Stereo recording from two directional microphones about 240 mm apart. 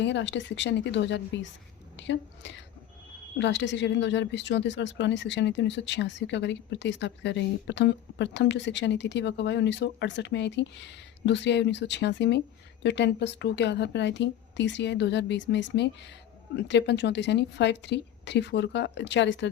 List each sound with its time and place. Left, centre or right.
0.0 s a woman's voice: left